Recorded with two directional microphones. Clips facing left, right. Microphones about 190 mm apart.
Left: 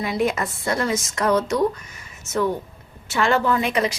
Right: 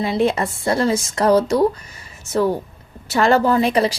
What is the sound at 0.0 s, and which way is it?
A woman's voice, 30° right (ahead or behind).